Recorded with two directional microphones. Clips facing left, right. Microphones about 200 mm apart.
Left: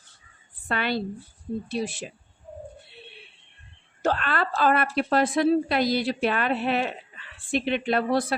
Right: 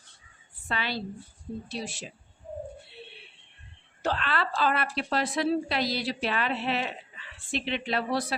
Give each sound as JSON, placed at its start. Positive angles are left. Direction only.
{"t": 0.7, "sound": "speech", "side_deg": 55}
{"t": 4.0, "sound": "a woman's voice", "side_deg": 50}